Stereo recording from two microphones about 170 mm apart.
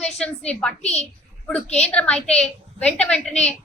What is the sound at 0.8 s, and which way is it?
Speech, 40° left (ahead or behind).